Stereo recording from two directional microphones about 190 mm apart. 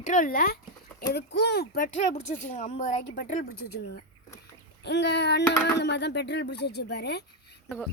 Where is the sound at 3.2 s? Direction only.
45° left (ahead or behind).